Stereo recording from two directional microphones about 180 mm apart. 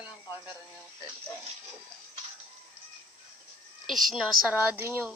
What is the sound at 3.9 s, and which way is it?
A woman's voice, centre (ahead or behind).